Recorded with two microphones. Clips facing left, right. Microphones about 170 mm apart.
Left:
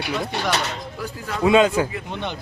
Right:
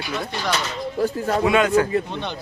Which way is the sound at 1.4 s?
20° left (ahead or behind).